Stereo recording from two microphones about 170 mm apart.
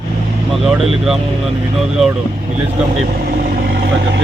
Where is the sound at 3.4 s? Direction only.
60° right (ahead or behind); by 4.2 s 80° right.